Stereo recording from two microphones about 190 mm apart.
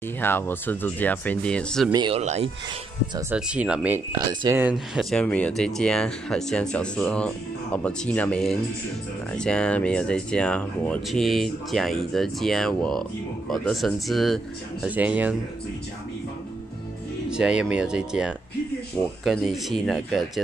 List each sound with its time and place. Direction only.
0.2 s speech: 10° left (ahead or behind)
1.9 s speech: 20° right (ahead or behind)
2.1 s speech: 35° right (ahead or behind)
3.3 s speech: 5° right (ahead or behind)
4.3 s speech: 25° right (ahead or behind)
4.6 s speech: 5° right (ahead or behind)
17.3 s speech: 5° right (ahead or behind)